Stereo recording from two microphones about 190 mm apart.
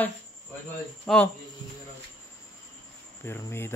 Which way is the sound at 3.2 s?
15° left (ahead or behind).